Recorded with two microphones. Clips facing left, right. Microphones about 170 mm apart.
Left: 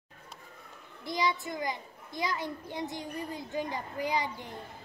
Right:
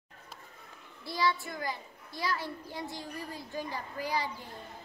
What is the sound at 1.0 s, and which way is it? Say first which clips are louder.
A child's voice: even; 20° left (ahead or behind).